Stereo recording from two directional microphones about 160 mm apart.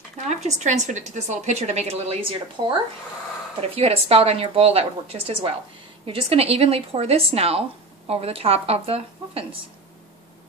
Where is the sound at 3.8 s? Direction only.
40° right (ahead or behind).